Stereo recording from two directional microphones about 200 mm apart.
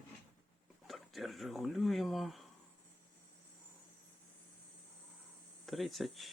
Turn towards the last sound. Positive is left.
turn(degrees=0)  # may be behind; listen again after turning